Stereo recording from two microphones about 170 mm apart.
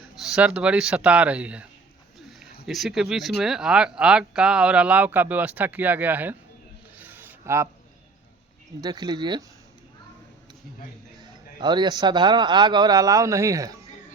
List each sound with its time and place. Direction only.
0.2 s speech: 5° right (ahead or behind)
2.6 s speech: centre (ahead or behind)
6.9 s a sound: 10° right (ahead or behind)
8.8 s speech: 25° right (ahead or behind)
11.6 s speech: 25° right (ahead or behind)